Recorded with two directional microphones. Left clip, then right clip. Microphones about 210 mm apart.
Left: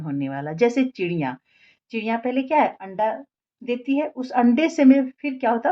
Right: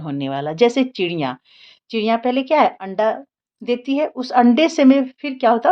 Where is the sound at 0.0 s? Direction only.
30° right (ahead or behind).